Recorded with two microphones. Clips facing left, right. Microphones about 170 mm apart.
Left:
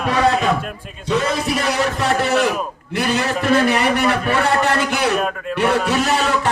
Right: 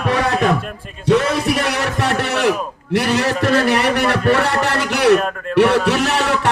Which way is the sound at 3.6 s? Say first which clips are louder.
Even; 75° right (ahead or behind).